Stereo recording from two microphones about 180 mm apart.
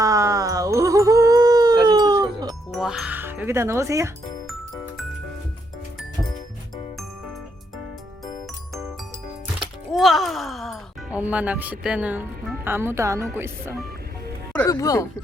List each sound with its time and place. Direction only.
0.0 s music: 15° right (ahead or behind)
2.7 s speech: centre (ahead or behind)
4.4 s music: centre (ahead or behind)
9.6 s music: centre (ahead or behind)
12.6 s speech: 15° right (ahead or behind)
14.5 s speech: 15° left (ahead or behind)